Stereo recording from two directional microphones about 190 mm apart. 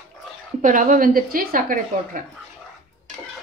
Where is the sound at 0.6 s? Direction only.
45° right (ahead or behind).